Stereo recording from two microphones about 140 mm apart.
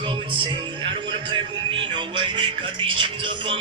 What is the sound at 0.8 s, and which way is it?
Speech, 35° right (ahead or behind).